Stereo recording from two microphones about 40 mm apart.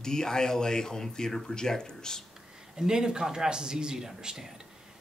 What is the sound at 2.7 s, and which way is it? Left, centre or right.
A man's voice, centre.